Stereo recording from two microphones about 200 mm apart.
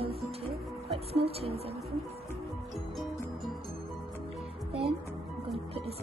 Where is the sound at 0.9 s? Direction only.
30° right (ahead or behind).